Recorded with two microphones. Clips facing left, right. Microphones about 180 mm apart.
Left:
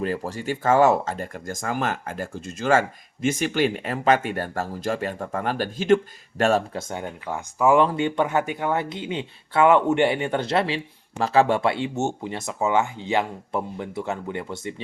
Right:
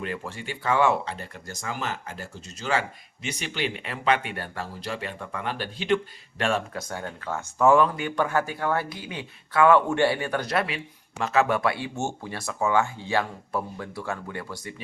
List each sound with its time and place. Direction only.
0.0 s speech: 35° left (ahead or behind)
6.7 s speech: 20° left (ahead or behind)
7.8 s speech: 25° left (ahead or behind)